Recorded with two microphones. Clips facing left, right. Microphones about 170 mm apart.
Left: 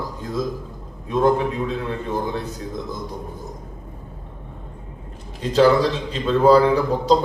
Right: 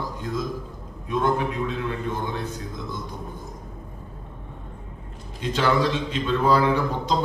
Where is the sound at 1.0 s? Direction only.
35° left (ahead or behind).